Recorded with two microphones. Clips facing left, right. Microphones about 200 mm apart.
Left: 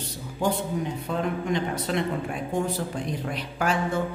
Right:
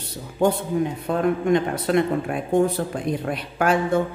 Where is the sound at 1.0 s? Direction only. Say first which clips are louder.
Right 7 dB; 55° right (ahead or behind).